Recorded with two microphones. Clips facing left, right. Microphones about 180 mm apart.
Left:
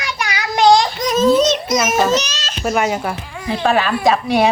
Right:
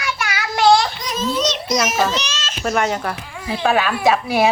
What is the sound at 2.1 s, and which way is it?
Speech, 40° left (ahead or behind).